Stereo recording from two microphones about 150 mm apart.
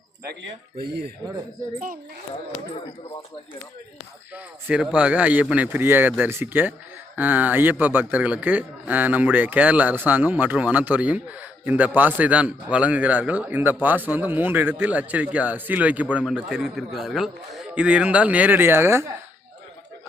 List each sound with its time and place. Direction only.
0.8 s speech: 90° right
4.4 s a man's voice: 5° right (ahead or behind)